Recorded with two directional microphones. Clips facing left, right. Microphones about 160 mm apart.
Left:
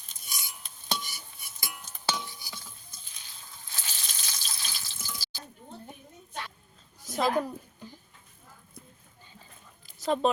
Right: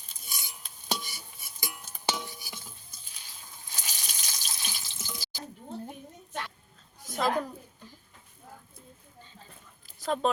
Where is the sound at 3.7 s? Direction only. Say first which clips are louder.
Even; 15° right (ahead or behind).